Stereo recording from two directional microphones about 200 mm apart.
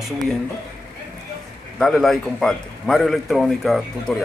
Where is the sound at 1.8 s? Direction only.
Centre (ahead or behind).